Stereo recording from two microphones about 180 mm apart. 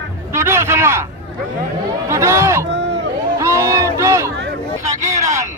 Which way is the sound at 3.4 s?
15° right (ahead or behind).